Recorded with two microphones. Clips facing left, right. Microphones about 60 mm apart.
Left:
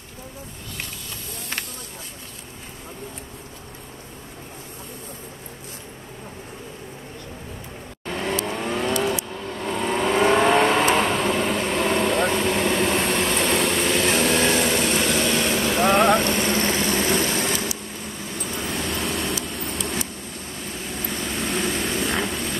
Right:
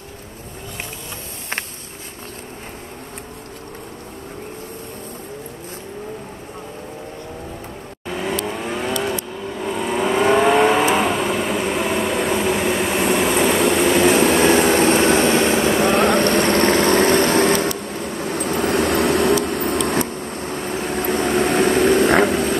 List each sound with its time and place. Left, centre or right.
8.0 s vehicle: centre; by 14.6 s right
14.6 s train: right
15.8 s vehicle: centre
16.2 s vehicle: right